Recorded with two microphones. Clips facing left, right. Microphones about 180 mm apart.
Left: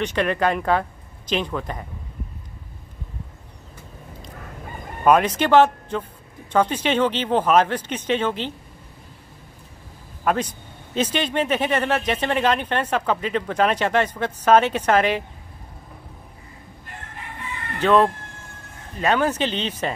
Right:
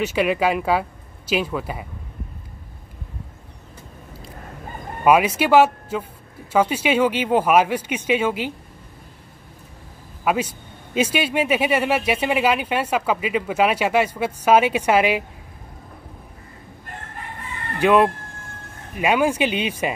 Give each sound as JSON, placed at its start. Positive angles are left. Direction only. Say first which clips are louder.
{"t": 0.0, "sound": "speech", "louder": "right 2 dB", "side_deg": -5}
{"t": 5.0, "sound": "speech", "louder": "right 1 dB", "side_deg": -10}
{"t": 10.2, "sound": "speech", "louder": "right 1 dB", "side_deg": -10}
{"t": 17.7, "sound": "speech", "louder": "right 1 dB", "side_deg": -10}